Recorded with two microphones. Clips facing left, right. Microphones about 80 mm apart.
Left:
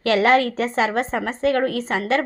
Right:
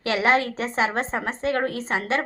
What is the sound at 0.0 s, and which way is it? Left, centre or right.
A woman's voice, right.